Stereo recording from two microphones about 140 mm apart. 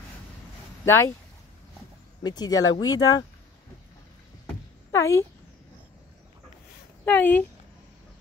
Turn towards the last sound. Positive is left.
turn(degrees=15)  # may be behind; listen again after turning